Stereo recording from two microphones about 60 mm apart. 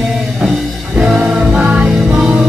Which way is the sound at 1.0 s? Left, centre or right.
Centre.